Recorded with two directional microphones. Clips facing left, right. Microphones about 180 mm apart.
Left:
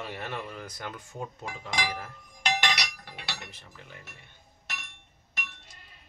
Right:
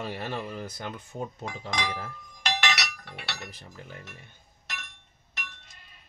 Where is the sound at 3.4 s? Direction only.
40° right (ahead or behind).